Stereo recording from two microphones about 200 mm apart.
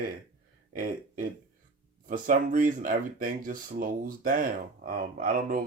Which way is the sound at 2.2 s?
40° right (ahead or behind).